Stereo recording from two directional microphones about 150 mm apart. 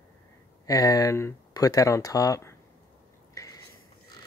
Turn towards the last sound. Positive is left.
turn(degrees=20)  # may be behind; listen again after turning